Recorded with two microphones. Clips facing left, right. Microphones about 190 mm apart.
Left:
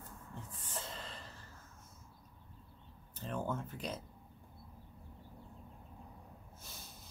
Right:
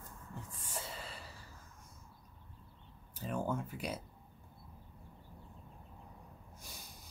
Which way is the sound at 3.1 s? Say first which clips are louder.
Right 2 dB; 10° right (ahead or behind).